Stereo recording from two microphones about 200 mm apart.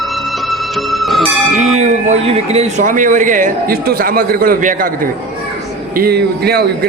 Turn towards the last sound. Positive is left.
turn(degrees=-50)  # may be behind; listen again after turning